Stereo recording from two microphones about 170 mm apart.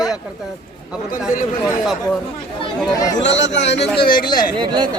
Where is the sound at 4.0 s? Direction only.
30° left (ahead or behind).